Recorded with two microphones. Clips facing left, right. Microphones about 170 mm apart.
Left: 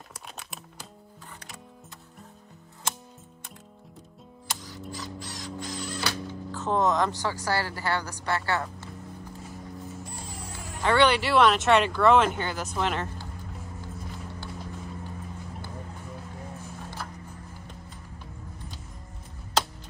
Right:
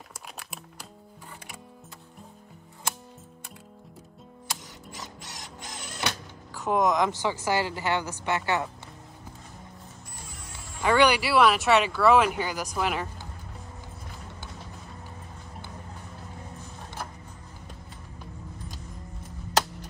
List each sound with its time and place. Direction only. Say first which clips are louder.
0.4 s music: even; centre (ahead or behind)
4.6 s mechanisms: left 5 dB; 20° right (ahead or behind)
10.8 s speech: even; 15° right (ahead or behind)